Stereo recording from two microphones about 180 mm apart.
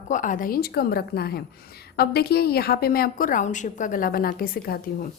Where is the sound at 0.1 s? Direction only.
45° left (ahead or behind).